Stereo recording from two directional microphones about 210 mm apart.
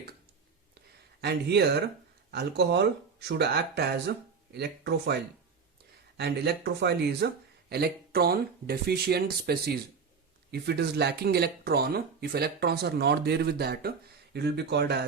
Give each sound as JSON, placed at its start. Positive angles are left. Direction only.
{"t": 1.2, "sound": "speech", "side_deg": -50}
{"t": 6.1, "sound": "speech", "side_deg": -50}